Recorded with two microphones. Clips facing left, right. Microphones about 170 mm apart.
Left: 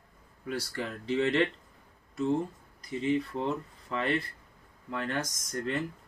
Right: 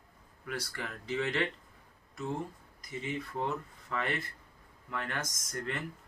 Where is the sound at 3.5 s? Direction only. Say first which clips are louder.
Left 3 dB; 30° left (ahead or behind).